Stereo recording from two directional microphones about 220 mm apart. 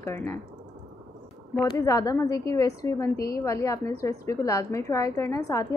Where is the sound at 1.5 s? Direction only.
15° left (ahead or behind).